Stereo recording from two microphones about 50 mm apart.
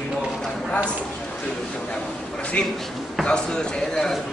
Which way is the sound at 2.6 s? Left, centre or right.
Left.